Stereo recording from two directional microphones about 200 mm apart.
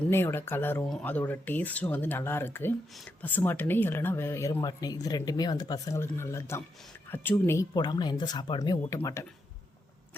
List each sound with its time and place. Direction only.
0.1 s speech: 10° left (ahead or behind)